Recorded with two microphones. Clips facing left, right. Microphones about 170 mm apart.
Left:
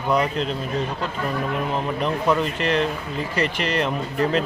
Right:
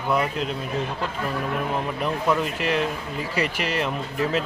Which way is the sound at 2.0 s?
5° right (ahead or behind).